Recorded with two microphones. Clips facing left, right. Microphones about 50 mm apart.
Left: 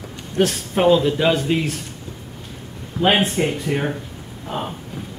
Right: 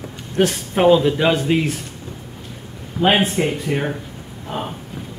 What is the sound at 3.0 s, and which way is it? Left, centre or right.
Speech, centre.